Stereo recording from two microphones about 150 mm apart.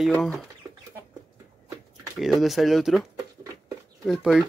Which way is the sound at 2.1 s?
Centre (ahead or behind).